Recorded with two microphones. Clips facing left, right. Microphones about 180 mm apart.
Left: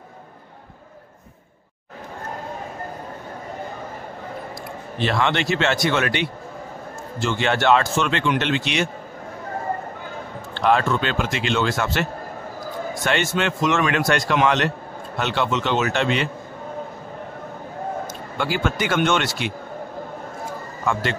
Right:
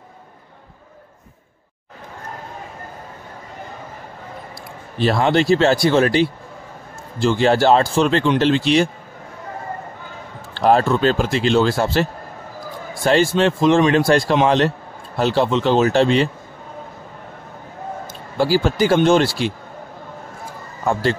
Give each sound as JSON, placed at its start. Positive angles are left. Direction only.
{"t": 4.9, "sound": "speech", "side_deg": -35}
{"t": 10.5, "sound": "speech", "side_deg": -35}
{"t": 18.4, "sound": "speech", "side_deg": -35}
{"t": 20.8, "sound": "speech", "side_deg": -35}